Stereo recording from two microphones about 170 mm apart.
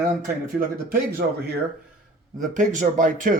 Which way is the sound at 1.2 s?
70° right (ahead or behind).